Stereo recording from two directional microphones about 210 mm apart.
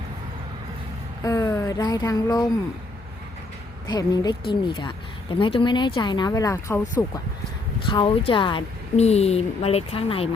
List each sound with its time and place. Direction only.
1.2 s speech: 15° left (ahead or behind)
3.8 s a woman's voice: 20° left (ahead or behind)
7.9 s a woman's voice: 25° left (ahead or behind)